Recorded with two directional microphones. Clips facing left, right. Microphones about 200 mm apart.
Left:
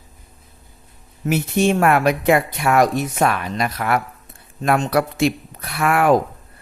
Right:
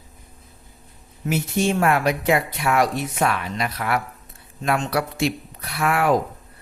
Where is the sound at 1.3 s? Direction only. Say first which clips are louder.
Left 4 dB; 60° left (ahead or behind).